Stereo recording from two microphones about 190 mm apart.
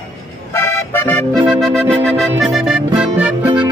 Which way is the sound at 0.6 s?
10° left (ahead or behind).